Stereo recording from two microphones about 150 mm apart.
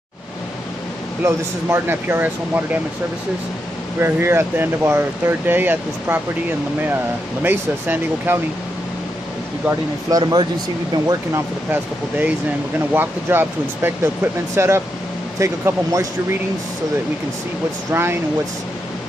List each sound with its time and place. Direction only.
1.2 s speech: 15° right (ahead or behind)
4.0 s speech: 15° right (ahead or behind)
7.4 s speech: 15° right (ahead or behind)
10.1 s speech: 25° right (ahead or behind)
17.9 s speech: 15° right (ahead or behind)